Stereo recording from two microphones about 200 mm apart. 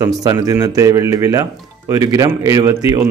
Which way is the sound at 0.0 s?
20° right (ahead or behind).